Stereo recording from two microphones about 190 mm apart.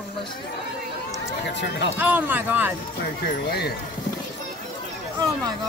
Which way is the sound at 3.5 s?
60° left (ahead or behind).